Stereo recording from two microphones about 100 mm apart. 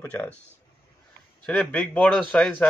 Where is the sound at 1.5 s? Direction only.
15° left (ahead or behind).